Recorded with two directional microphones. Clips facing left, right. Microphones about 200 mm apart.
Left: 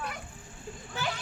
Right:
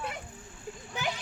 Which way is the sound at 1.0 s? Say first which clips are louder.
Even; 15° right (ahead or behind).